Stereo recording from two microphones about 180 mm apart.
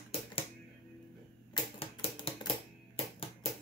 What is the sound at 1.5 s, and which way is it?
Typewriter, 30° left (ahead or behind).